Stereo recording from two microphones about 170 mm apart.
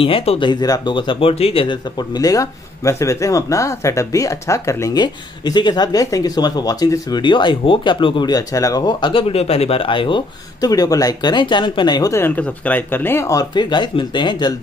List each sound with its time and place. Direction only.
0.0 s speech: 35° left (ahead or behind)